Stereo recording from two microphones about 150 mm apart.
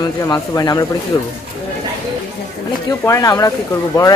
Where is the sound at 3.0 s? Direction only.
20° left (ahead or behind).